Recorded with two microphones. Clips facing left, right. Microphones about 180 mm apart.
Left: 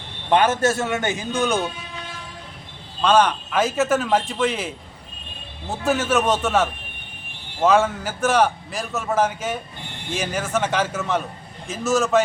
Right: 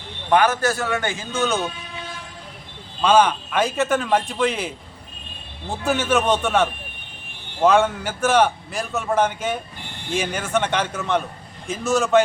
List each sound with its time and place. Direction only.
0.3 s a man's voice: 25° left (ahead or behind)
3.0 s a man's voice: centre (ahead or behind)